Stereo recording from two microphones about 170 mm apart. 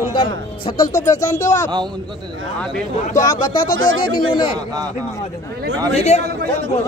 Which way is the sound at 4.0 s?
30° left (ahead or behind).